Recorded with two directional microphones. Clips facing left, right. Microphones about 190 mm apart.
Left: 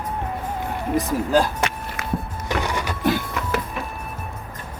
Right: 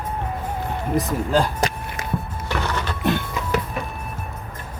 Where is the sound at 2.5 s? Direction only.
15° left (ahead or behind).